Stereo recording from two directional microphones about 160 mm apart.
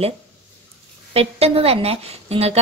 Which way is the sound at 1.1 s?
40° right (ahead or behind).